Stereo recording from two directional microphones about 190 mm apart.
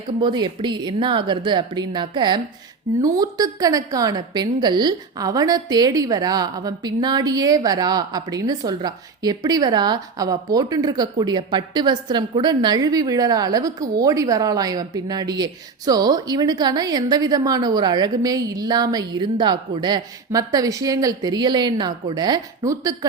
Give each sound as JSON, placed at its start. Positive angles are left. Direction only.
{"t": 0.2, "sound": "a woman's voice", "side_deg": -25}